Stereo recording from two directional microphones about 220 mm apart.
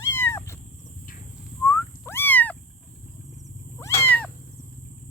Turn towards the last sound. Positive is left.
turn(degrees=10)  # may be behind; listen again after turning